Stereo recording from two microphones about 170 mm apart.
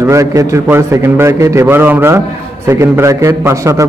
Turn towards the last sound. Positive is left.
turn(degrees=-20)  # may be behind; listen again after turning